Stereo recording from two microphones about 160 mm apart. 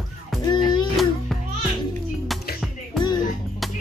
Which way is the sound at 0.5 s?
30° left (ahead or behind).